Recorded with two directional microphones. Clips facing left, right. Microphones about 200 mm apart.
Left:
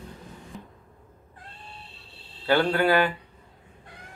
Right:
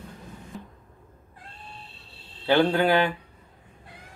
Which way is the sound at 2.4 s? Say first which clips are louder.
Right 1 dB; 15° right (ahead or behind).